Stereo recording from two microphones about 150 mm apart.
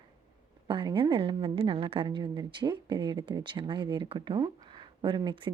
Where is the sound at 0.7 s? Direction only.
35° right (ahead or behind).